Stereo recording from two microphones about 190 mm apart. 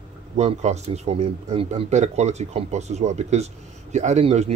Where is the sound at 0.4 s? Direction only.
35° right (ahead or behind).